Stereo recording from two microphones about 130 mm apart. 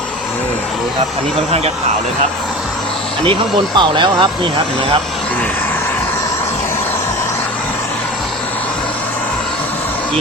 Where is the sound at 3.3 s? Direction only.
40° right (ahead or behind).